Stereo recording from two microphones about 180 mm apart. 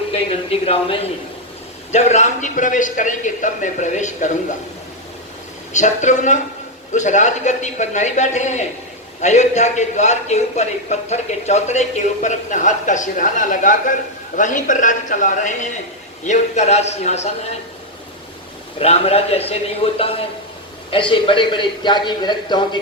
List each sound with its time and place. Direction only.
0.1 s a man's voice: 35° left (ahead or behind)
5.7 s a man's voice: 40° left (ahead or behind)
18.8 s a man's voice: 35° left (ahead or behind)